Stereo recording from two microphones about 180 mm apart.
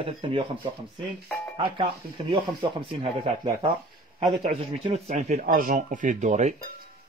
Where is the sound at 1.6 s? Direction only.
25° right (ahead or behind).